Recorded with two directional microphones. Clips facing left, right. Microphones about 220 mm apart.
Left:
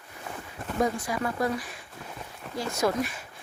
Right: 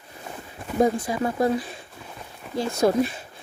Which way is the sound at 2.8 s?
25° right (ahead or behind).